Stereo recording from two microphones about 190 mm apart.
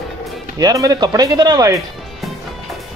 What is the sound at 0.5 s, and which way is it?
Speech, 20° right (ahead or behind).